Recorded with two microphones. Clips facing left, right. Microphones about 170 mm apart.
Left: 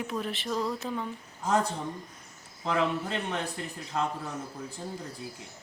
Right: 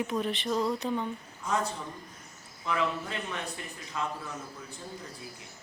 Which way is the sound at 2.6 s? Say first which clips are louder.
Left 3 dB; 75° left (ahead or behind).